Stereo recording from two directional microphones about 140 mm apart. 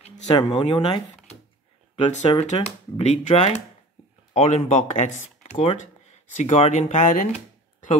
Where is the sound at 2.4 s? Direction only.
55° left (ahead or behind).